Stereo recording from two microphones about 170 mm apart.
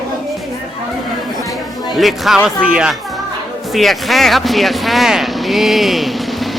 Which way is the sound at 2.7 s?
5° right (ahead or behind).